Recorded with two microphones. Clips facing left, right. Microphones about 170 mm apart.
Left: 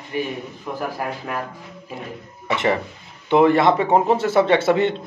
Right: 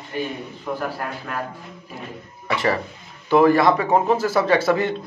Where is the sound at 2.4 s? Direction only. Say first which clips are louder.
Left 1 dB; 25° left (ahead or behind).